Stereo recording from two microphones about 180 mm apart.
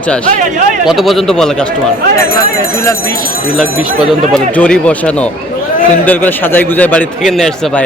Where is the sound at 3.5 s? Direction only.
Centre (ahead or behind).